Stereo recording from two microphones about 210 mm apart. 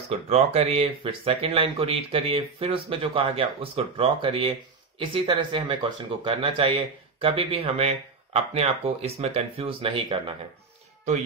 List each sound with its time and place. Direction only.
0.3 s speech: 30° right (ahead or behind)